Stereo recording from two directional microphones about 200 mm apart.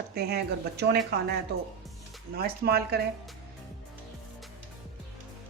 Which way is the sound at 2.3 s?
50° right (ahead or behind).